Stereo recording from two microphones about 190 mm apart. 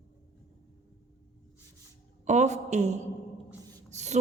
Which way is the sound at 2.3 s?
40° right (ahead or behind).